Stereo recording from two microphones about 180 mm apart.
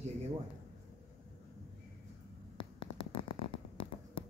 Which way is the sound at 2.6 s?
25° left (ahead or behind).